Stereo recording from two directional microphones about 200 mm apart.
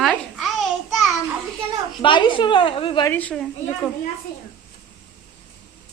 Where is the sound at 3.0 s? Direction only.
10° left (ahead or behind).